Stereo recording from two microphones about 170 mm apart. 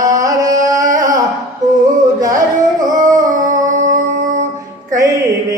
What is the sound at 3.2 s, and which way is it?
Music, 50° right (ahead or behind).